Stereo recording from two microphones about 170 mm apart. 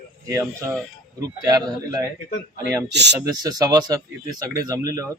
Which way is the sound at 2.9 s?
85° right.